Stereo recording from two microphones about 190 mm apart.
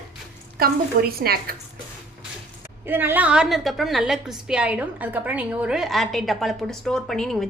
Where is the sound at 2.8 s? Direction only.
10° right (ahead or behind).